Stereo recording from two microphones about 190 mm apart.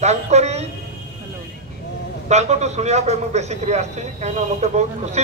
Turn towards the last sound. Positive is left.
turn(degrees=-35)  # may be behind; listen again after turning